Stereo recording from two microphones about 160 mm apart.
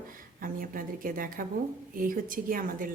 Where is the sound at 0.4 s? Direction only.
60° right (ahead or behind).